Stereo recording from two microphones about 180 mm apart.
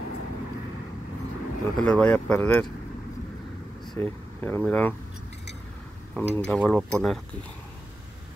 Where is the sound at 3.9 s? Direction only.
10° left (ahead or behind).